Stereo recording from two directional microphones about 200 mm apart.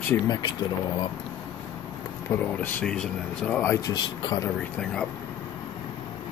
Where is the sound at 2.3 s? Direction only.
10° left (ahead or behind).